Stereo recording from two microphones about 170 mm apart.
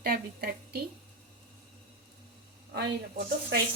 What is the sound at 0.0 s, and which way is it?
Speech, 65° right (ahead or behind).